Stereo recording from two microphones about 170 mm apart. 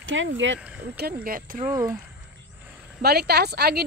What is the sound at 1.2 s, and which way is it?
Speech, 55° right (ahead or behind).